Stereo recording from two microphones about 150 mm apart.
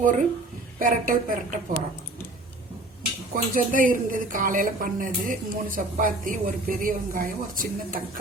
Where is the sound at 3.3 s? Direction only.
65° right (ahead or behind).